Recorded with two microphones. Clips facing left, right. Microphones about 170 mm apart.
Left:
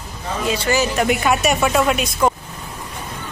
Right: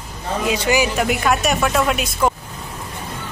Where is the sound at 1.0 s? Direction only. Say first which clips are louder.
Left 1 dB; centre (ahead or behind).